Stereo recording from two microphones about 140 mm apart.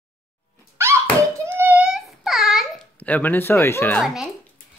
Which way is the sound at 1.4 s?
15° right (ahead or behind).